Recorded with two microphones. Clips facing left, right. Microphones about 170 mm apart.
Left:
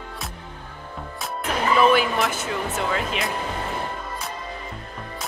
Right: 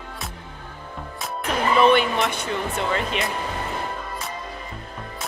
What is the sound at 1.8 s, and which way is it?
Speech, 5° left (ahead or behind).